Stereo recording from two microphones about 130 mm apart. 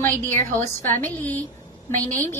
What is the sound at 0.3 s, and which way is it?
Speech, 75° right (ahead or behind).